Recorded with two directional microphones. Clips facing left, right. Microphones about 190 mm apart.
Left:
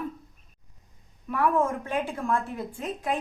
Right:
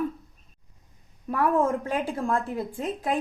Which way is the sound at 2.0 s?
35° right (ahead or behind).